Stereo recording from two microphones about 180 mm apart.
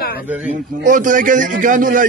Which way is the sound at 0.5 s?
45° right (ahead or behind).